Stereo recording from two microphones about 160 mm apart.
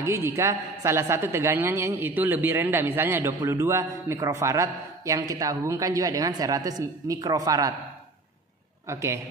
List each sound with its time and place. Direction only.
0.0 s a woman's voice: 15° right (ahead or behind)
8.8 s a woman's voice: 20° right (ahead or behind)